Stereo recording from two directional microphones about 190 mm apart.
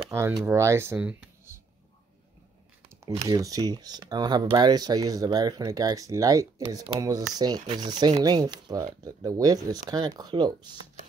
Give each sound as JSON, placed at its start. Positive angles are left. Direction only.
{"t": 0.1, "sound": "speech", "side_deg": -15}
{"t": 3.3, "sound": "speech", "side_deg": -20}